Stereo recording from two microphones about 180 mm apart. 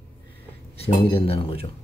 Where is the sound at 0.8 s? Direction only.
30° left (ahead or behind).